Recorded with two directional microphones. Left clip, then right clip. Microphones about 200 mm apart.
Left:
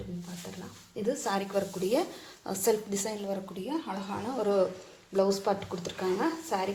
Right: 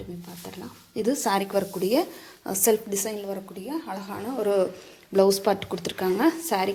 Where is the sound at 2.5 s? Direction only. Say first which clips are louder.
Right 5 dB; 30° right (ahead or behind).